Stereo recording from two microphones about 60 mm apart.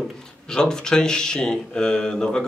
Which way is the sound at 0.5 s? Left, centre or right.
Centre.